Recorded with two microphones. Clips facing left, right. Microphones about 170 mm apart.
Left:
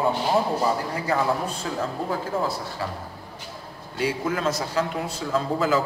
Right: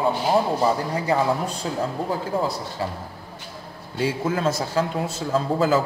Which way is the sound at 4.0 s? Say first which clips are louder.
Right 2 dB; 30° right (ahead or behind).